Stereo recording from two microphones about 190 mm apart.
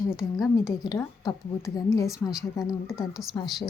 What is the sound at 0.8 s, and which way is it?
A woman's voice, 20° left (ahead or behind).